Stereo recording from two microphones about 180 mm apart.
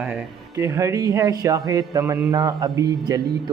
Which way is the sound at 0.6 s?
20° right (ahead or behind).